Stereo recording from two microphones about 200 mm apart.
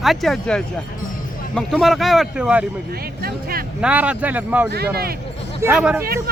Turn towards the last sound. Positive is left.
turn(degrees=-5)  # may be behind; listen again after turning